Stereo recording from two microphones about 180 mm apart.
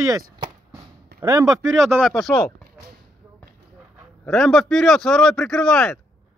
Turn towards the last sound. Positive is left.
turn(degrees=5)  # may be behind; listen again after turning